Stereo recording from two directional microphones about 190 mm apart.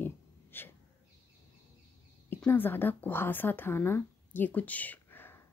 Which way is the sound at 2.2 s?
10° left (ahead or behind).